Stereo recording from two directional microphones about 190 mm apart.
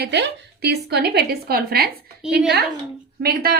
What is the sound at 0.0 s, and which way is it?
A woman's voice, 60° right (ahead or behind).